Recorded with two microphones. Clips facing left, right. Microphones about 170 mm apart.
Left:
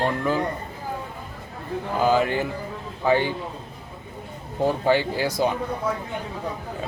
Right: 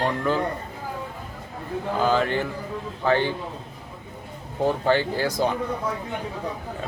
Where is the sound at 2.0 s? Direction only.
10° left (ahead or behind).